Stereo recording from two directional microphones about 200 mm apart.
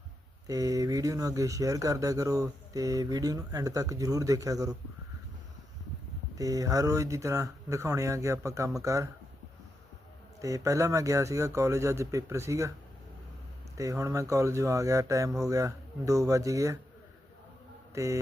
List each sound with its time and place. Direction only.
0.4 s speech: 15° right (ahead or behind)
6.3 s speech: 15° right (ahead or behind)
10.4 s speech: 15° right (ahead or behind)
13.7 s speech: 15° right (ahead or behind)
17.9 s mantra: 15° right (ahead or behind)